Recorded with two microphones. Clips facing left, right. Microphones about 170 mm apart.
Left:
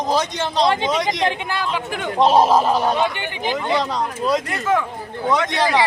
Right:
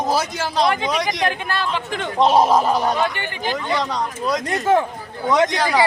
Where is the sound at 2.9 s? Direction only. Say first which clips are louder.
Left 1 dB; 15° left (ahead or behind).